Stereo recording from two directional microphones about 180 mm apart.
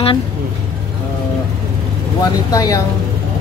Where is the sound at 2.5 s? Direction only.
20° left (ahead or behind).